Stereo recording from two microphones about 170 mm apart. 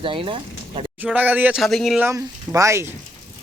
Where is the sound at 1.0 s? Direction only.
10° right (ahead or behind).